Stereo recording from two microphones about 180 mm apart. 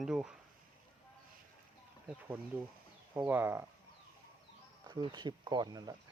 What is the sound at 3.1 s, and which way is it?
Speech, 10° right (ahead or behind).